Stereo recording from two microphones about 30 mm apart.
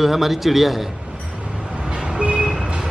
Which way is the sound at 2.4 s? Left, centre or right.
Right.